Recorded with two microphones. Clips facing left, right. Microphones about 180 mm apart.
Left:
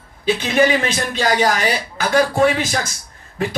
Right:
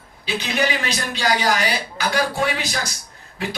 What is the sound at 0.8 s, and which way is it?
Speech, 45° left (ahead or behind).